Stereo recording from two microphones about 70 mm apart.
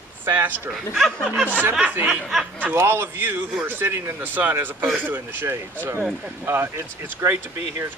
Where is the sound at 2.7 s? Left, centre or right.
Right.